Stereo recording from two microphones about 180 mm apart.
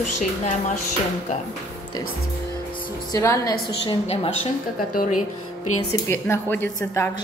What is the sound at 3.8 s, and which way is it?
Speech, 30° left (ahead or behind).